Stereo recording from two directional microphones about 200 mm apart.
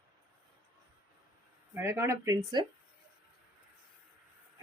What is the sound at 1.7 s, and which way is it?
Speech, 10° right (ahead or behind).